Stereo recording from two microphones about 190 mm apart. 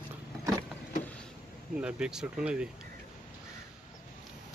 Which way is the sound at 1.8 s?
5° right (ahead or behind).